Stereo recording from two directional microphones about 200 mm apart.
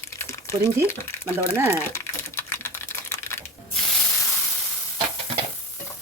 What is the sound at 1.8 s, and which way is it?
Typing, 15° left (ahead or behind).